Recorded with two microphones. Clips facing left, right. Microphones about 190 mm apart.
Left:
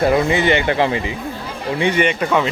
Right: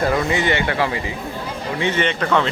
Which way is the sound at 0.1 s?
20° left (ahead or behind).